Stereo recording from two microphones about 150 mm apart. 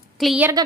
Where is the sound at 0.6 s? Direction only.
30° right (ahead or behind).